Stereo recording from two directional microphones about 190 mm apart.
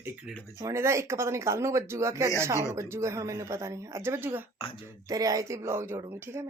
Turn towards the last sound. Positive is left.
turn(degrees=-15)  # may be behind; listen again after turning